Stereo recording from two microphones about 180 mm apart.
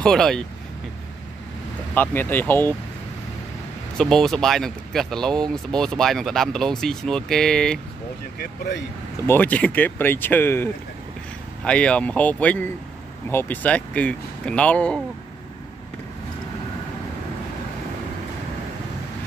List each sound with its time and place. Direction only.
0.0 s speech: 5° left (ahead or behind)
2.0 s speech: 10° left (ahead or behind)
4.0 s speech: 5° left (ahead or behind)
8.4 s speech: 70° left (ahead or behind)
9.3 s speech: 10° left (ahead or behind)